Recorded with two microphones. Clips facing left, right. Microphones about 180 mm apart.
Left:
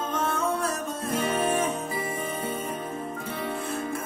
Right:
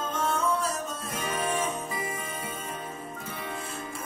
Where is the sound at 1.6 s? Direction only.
60° left (ahead or behind).